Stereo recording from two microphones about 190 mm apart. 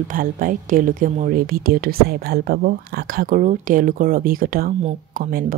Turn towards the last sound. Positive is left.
turn(degrees=-50)  # may be behind; listen again after turning